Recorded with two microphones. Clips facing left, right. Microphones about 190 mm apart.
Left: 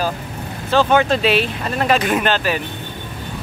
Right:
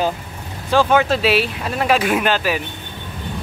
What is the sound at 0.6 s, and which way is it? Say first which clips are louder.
Speech: even; 10° right (ahead or behind).